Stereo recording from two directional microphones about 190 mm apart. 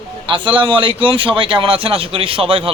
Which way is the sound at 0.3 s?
25° right (ahead or behind).